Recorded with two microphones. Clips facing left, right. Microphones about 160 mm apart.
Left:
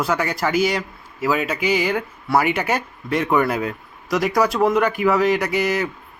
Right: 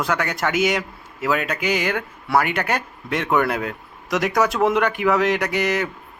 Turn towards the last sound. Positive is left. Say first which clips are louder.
# left 1 dB
turn(degrees=5)  # may be behind; listen again after turning